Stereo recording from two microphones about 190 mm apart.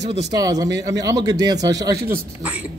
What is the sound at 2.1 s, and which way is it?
Speech, 10° right (ahead or behind).